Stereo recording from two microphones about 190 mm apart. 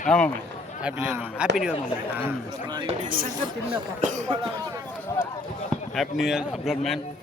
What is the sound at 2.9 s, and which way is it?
Speech, 45° right (ahead or behind).